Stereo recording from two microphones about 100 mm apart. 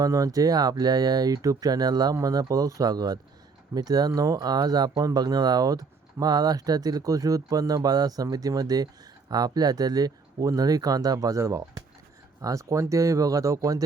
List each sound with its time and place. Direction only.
0.0 s speech: 35° right (ahead or behind)